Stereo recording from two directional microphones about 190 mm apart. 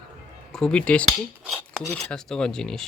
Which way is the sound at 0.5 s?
5° left (ahead or behind).